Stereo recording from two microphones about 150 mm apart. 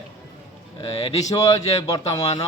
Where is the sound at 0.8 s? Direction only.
35° left (ahead or behind).